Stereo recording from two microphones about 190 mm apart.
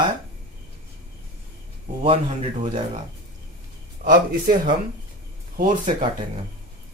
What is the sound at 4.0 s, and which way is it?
Speech, 45° right (ahead or behind).